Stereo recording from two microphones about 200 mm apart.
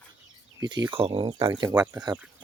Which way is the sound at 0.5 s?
20° right (ahead or behind).